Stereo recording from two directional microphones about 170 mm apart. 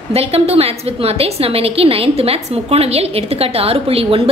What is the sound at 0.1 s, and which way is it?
A woman's voice, 35° right (ahead or behind).